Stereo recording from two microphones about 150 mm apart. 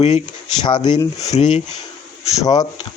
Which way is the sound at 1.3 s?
50° left (ahead or behind).